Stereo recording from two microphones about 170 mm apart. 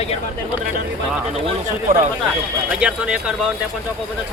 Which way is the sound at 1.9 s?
55° right (ahead or behind).